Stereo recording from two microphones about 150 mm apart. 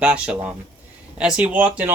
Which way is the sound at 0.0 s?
5° right (ahead or behind).